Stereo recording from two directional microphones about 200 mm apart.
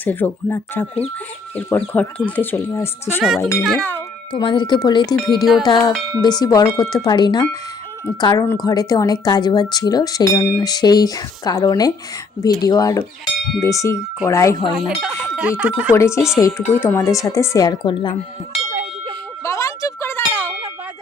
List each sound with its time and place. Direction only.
0.0 s speech: 10° left (ahead or behind)
3.2 s speech: centre (ahead or behind)
4.3 s speech: 25° left (ahead or behind)
14.6 s speech: centre (ahead or behind)
16.0 s speech: 15° left (ahead or behind)
18.7 s a sound: 35° right (ahead or behind)
19.4 s ding: 15° left (ahead or behind)